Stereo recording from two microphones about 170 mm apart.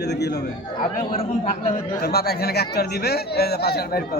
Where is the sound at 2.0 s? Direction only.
65° left (ahead or behind).